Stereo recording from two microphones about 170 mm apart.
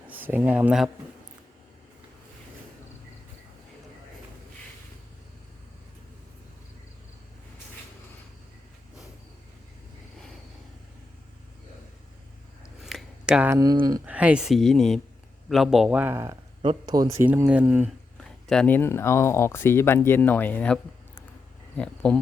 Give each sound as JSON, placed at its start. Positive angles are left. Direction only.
{"t": 0.1, "sound": "speech", "side_deg": -10}
{"t": 12.8, "sound": "a sound", "side_deg": 0}
{"t": 13.5, "sound": "speech", "side_deg": -20}
{"t": 14.0, "sound": "a man's voice", "side_deg": -10}
{"t": 21.8, "sound": "speech", "side_deg": 5}